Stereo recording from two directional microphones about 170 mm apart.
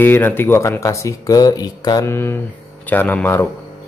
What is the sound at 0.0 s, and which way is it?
Speech, 10° left (ahead or behind).